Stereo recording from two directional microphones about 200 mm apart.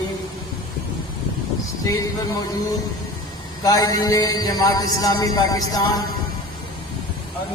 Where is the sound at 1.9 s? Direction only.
15° left (ahead or behind).